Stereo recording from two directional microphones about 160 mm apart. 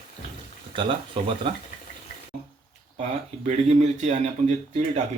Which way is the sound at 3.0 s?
45° right (ahead or behind).